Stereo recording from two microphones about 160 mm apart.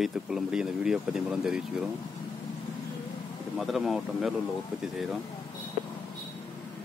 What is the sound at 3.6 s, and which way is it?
Speech, centre (ahead or behind).